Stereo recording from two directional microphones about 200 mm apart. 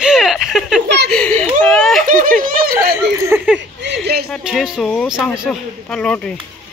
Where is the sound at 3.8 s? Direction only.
60° right (ahead or behind).